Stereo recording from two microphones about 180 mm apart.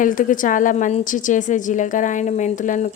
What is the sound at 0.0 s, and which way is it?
A woman's voice, 50° left (ahead or behind).